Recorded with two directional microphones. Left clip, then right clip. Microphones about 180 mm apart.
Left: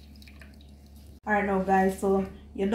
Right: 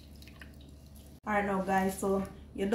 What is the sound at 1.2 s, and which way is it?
Speech, 15° left (ahead or behind).